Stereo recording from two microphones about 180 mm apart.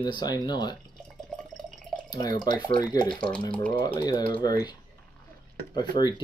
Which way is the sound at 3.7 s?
25° left (ahead or behind).